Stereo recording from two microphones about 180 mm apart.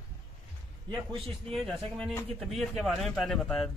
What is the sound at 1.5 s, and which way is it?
A man's voice, centre (ahead or behind).